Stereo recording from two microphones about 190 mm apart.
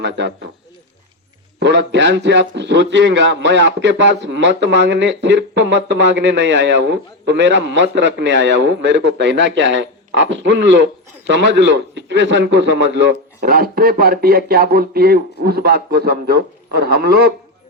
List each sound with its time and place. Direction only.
0.0 s a man's voice: 70° right (ahead or behind)
1.5 s a man's voice: 70° right (ahead or behind)
13.4 s speech: 50° right (ahead or behind)